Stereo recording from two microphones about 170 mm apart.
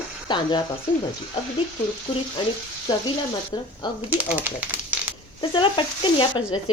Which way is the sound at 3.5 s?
25° left (ahead or behind).